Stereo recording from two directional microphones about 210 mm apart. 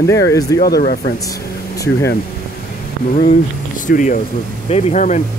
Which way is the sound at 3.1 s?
35° left (ahead or behind).